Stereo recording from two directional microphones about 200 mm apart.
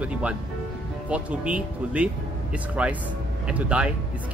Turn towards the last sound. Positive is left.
turn(degrees=-5)  # may be behind; listen again after turning